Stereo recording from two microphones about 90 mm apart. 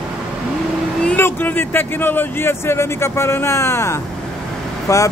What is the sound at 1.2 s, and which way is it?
Speech, 25° left (ahead or behind).